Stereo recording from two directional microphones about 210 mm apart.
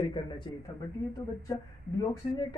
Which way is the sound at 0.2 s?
25° left (ahead or behind).